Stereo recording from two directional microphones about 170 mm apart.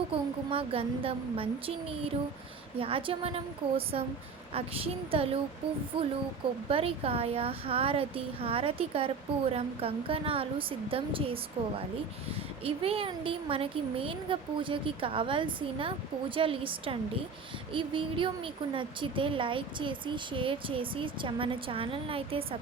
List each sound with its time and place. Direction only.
0.1 s a woman's voice: 35° right (ahead or behind)